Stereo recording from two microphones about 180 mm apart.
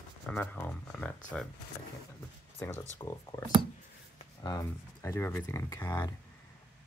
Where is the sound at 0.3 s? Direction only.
5° left (ahead or behind).